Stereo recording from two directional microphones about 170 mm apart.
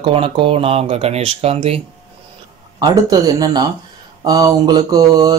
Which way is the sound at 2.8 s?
20° right (ahead or behind).